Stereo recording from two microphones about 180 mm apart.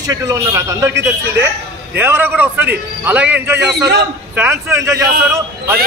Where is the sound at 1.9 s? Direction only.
10° right (ahead or behind).